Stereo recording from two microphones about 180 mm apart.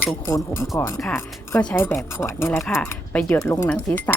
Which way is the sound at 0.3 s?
15° left (ahead or behind).